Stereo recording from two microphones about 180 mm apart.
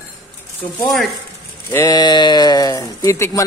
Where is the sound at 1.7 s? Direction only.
20° left (ahead or behind).